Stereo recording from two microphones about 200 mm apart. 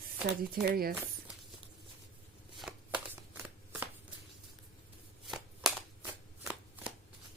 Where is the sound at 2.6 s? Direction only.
5° right (ahead or behind).